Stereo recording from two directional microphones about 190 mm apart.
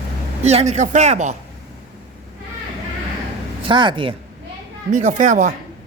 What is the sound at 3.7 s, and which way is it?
Speech, 25° right (ahead or behind).